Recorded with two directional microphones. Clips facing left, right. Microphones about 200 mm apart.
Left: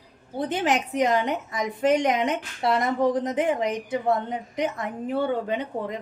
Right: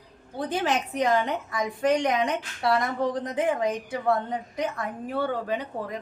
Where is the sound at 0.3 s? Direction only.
20° left (ahead or behind).